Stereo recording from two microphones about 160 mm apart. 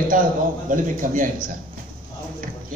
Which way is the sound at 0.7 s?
55° right (ahead or behind).